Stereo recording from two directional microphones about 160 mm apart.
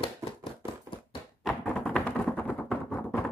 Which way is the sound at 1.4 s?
5° left (ahead or behind).